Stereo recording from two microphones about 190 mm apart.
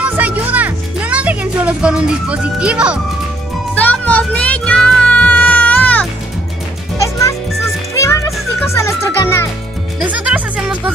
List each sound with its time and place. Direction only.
0.0 s music: 10° right (ahead or behind)
3.7 s music: 10° left (ahead or behind)
10.1 s music: 5° right (ahead or behind)